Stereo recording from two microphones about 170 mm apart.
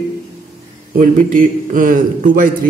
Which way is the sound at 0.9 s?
50° right (ahead or behind).